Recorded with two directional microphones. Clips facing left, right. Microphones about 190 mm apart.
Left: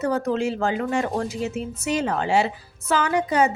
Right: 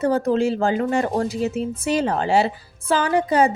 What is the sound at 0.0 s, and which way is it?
A woman's voice, 30° right (ahead or behind).